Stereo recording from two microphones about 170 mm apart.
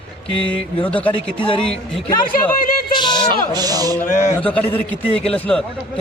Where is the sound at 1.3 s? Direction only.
30° left (ahead or behind).